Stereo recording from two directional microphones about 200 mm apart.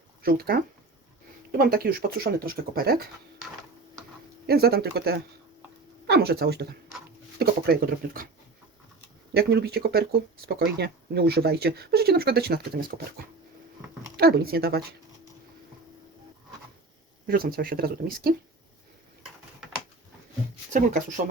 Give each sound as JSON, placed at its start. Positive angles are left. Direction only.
{"t": 0.2, "sound": "speech", "side_deg": -50}
{"t": 4.4, "sound": "speech", "side_deg": -50}
{"t": 9.3, "sound": "speech", "side_deg": -50}
{"t": 14.2, "sound": "speech", "side_deg": -50}
{"t": 17.2, "sound": "speech", "side_deg": -45}